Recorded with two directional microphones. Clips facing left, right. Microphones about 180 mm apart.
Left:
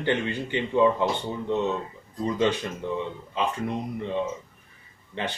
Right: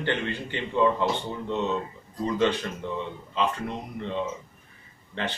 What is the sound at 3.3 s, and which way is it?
A man's voice, 15° left (ahead or behind).